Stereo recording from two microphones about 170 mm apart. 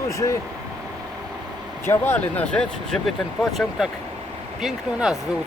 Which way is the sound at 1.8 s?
10° left (ahead or behind).